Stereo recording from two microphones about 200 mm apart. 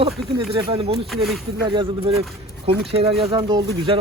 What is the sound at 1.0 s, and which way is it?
Speech, centre (ahead or behind).